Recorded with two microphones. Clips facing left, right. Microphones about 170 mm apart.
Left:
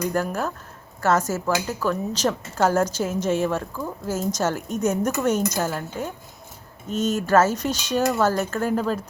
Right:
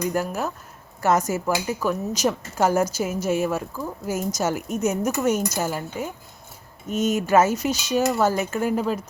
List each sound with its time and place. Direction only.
0.1 s a woman's voice: 10° right (ahead or behind)